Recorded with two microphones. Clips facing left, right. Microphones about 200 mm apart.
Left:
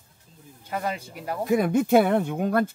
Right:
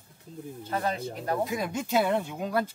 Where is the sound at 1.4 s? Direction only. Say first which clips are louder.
Left 8 dB; 55° left (ahead or behind).